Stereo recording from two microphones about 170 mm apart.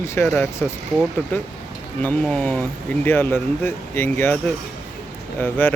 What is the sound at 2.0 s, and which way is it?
Speech, 10° left (ahead or behind).